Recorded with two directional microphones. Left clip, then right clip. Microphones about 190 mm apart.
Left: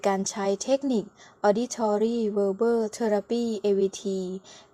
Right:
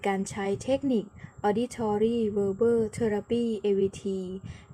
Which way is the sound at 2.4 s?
10° left (ahead or behind).